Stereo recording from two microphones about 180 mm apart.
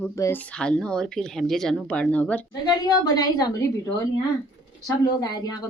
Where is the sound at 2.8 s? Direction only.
20° left (ahead or behind).